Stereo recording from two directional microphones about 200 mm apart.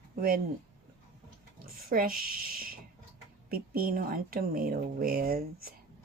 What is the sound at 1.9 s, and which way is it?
A woman's voice, 45° right (ahead or behind).